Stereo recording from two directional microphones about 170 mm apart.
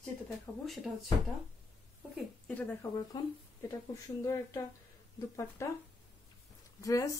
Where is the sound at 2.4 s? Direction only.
10° left (ahead or behind).